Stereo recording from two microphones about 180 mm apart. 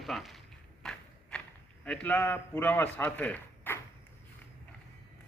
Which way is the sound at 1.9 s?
5° left (ahead or behind).